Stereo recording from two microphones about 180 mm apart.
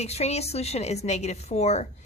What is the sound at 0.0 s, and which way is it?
A woman's voice, 35° left (ahead or behind).